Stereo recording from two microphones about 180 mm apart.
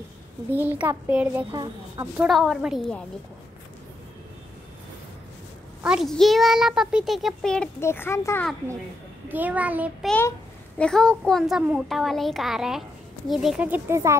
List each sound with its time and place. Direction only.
0.6 s a child's voice: 10° right (ahead or behind)
1.5 s a woman's voice: 20° right (ahead or behind)
2.1 s a child's voice: centre (ahead or behind)
5.8 s a child's voice: 5° right (ahead or behind); by 8.5 s 15° left (ahead or behind)
9.3 s a child's voice: 10° right (ahead or behind)
10.0 s a child's voice: 10° left (ahead or behind); by 14.1 s 15° right (ahead or behind)